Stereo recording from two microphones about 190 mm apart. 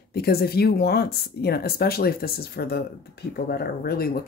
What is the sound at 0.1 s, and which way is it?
Speech, 55° left (ahead or behind).